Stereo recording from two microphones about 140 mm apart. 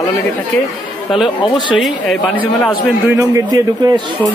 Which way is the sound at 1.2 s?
35° left (ahead or behind).